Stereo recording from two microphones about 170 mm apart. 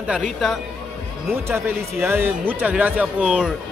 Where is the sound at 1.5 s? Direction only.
15° right (ahead or behind).